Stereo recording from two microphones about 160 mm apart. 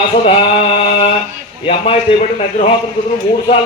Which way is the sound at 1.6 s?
35° left (ahead or behind).